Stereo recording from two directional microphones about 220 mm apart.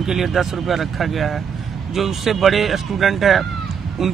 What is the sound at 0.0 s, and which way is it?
Speech, centre (ahead or behind).